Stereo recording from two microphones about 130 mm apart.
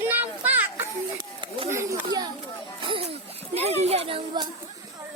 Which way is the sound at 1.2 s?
35° right (ahead or behind).